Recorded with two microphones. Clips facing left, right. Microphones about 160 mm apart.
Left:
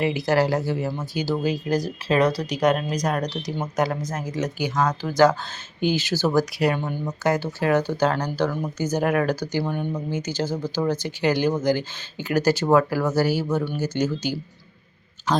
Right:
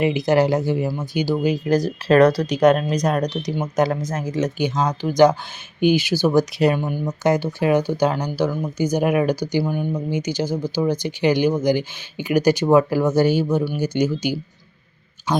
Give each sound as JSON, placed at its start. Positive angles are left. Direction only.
{"t": 0.0, "sound": "speech", "side_deg": -20}
{"t": 1.8, "sound": "speech", "side_deg": -60}
{"t": 3.0, "sound": "speech", "side_deg": -25}
{"t": 8.8, "sound": "speech", "side_deg": -15}